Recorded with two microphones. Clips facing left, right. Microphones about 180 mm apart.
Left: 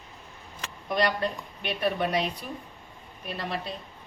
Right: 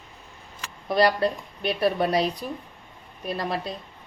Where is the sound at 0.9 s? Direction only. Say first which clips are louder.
Right 5 dB; 35° right (ahead or behind).